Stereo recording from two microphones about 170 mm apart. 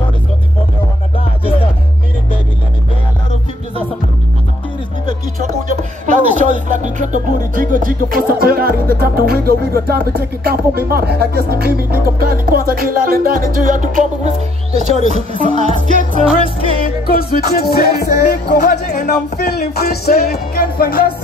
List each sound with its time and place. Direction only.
5.7 s speech: 45° right (ahead or behind)
15.3 s music: 40° right (ahead or behind)
16.8 s music: 60° left (ahead or behind)
18.5 s speech: 50° left (ahead or behind)
19.3 s music: 65° left (ahead or behind)